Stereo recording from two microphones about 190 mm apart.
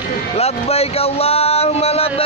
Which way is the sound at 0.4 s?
30° left (ahead or behind).